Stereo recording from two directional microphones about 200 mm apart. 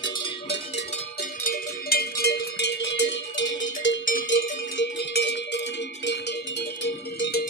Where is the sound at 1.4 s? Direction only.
50° left (ahead or behind).